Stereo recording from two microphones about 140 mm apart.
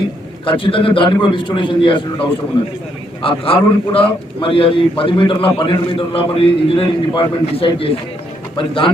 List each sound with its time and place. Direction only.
0.4 s a man's voice: 40° left (ahead or behind)
3.2 s a man's voice: 40° left (ahead or behind)